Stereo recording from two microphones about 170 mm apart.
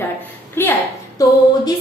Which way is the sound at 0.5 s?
10° left (ahead or behind).